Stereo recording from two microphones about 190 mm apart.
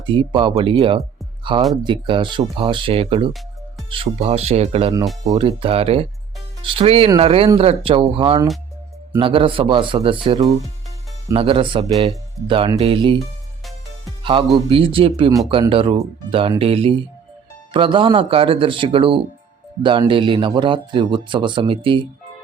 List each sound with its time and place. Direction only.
0.0 s a man's voice: 25° right (ahead or behind)
11.3 s a man's voice: 30° right (ahead or behind)
14.3 s a man's voice: 25° right (ahead or behind)